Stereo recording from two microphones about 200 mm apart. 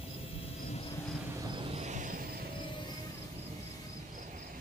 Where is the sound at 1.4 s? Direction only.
25° right (ahead or behind); by 2.4 s 40° right (ahead or behind).